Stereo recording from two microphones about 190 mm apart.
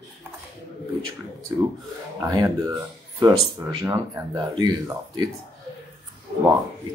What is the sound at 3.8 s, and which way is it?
Speech, 20° right (ahead or behind).